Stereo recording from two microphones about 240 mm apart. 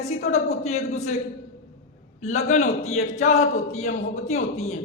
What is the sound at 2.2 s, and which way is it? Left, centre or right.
A man's voice, left.